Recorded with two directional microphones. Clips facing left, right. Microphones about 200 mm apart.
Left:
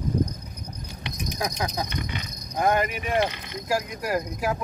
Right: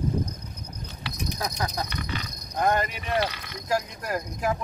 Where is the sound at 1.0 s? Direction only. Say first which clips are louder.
Left 2 dB; 20° left (ahead or behind).